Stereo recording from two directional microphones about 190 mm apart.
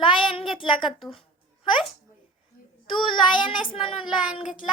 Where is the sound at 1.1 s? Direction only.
25° left (ahead or behind).